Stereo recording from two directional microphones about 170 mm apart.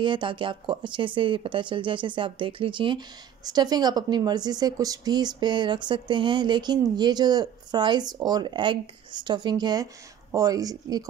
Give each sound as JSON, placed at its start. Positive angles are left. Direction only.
{"t": 0.0, "sound": "a woman's voice", "side_deg": -30}